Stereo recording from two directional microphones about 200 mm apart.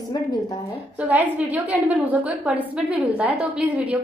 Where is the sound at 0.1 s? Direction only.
20° left (ahead or behind).